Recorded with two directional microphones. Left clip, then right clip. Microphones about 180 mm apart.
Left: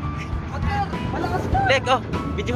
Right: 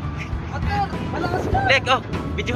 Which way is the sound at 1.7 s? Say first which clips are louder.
Right 2 dB; 35° left (ahead or behind).